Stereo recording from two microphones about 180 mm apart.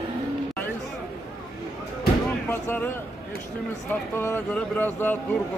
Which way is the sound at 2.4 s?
10° left (ahead or behind).